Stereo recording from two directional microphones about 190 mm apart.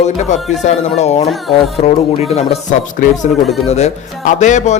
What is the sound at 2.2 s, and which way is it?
Speech, 35° left (ahead or behind).